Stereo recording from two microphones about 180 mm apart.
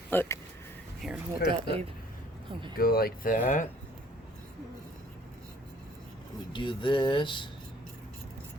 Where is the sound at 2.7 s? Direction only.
55° left (ahead or behind).